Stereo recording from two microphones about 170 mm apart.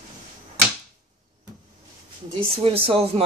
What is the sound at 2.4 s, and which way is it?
Speech, 35° right (ahead or behind).